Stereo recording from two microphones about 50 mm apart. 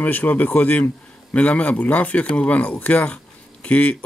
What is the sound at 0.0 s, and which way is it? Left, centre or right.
Speech, left.